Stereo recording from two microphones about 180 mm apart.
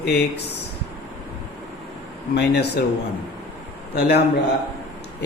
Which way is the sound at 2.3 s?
65° left (ahead or behind).